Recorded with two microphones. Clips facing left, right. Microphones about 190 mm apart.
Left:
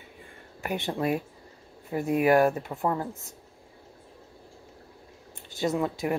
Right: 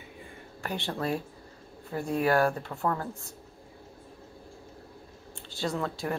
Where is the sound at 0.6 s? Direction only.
20° left (ahead or behind).